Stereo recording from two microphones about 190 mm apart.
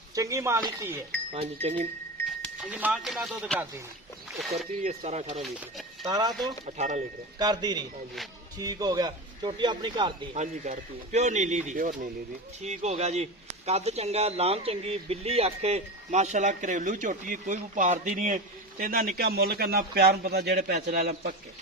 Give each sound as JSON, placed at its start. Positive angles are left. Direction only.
{"t": 0.2, "sound": "speech", "side_deg": -15}
{"t": 1.3, "sound": "speech", "side_deg": -30}
{"t": 2.6, "sound": "speech", "side_deg": -5}
{"t": 4.3, "sound": "a sound", "side_deg": 0}
{"t": 4.8, "sound": "speech", "side_deg": -35}
{"t": 5.4, "sound": "speech", "side_deg": 0}
{"t": 6.1, "sound": "speech", "side_deg": -20}
{"t": 6.7, "sound": "speech", "side_deg": -35}
{"t": 7.3, "sound": "speech", "side_deg": -20}
{"t": 10.3, "sound": "a man's voice", "side_deg": -40}
{"t": 20.7, "sound": "speech", "side_deg": -40}